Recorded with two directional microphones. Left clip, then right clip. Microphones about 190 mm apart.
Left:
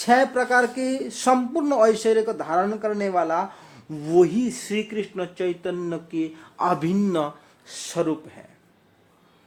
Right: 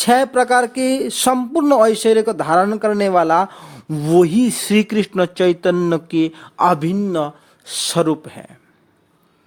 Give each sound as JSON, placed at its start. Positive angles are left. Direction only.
{"t": 0.0, "sound": "speech", "side_deg": -40}
{"t": 6.4, "sound": "speech", "side_deg": -35}
{"t": 6.9, "sound": "speech", "side_deg": -20}
{"t": 7.6, "sound": "speech", "side_deg": -45}